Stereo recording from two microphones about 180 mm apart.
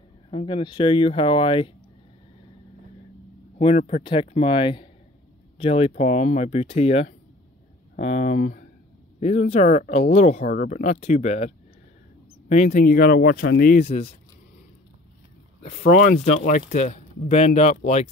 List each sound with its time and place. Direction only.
0.3 s speech: 30° left (ahead or behind)
3.5 s speech: 35° left (ahead or behind); by 13.7 s 55° left (ahead or behind)
13.7 s speech: 35° left (ahead or behind)
15.6 s speech: 40° left (ahead or behind)